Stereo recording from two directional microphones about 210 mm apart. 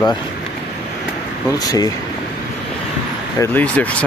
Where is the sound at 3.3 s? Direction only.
10° left (ahead or behind).